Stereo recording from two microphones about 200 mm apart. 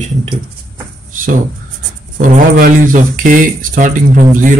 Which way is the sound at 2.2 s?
45° right (ahead or behind).